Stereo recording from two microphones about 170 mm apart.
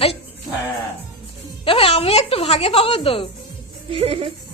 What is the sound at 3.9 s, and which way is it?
Speech, 35° right (ahead or behind).